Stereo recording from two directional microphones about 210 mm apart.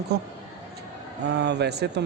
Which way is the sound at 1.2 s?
55° right (ahead or behind).